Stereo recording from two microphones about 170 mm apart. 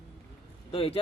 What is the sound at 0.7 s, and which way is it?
Speech, 30° left (ahead or behind).